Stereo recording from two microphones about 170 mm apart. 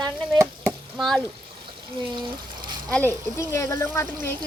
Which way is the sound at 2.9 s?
10° left (ahead or behind).